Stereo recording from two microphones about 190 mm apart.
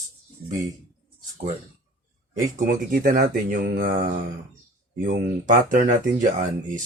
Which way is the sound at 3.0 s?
45° right (ahead or behind).